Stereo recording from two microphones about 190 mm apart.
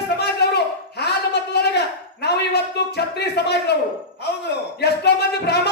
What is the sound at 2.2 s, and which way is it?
Speech, 60° left (ahead or behind).